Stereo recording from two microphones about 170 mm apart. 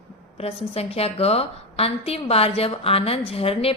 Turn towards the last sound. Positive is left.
turn(degrees=35)  # may be behind; listen again after turning